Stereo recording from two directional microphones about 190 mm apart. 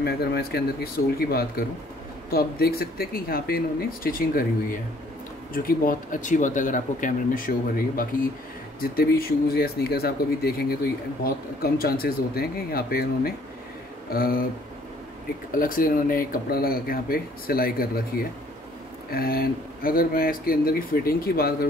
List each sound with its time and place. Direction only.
0.0 s speech: 55° left (ahead or behind)
5.5 s speech: 50° left (ahead or behind)
15.5 s speech: 50° left (ahead or behind)
19.1 s speech: 50° left (ahead or behind)